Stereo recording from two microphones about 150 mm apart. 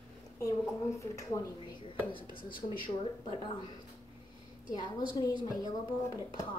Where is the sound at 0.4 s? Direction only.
20° left (ahead or behind).